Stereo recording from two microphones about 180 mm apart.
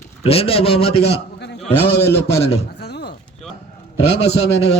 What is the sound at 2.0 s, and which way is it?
Speech, 15° left (ahead or behind).